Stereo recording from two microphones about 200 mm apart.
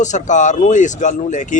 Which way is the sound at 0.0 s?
35° left (ahead or behind).